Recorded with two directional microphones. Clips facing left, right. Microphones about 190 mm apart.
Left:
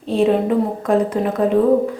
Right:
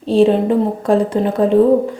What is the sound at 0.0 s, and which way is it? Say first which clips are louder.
Speech: right 4 dB; 30° right (ahead or behind).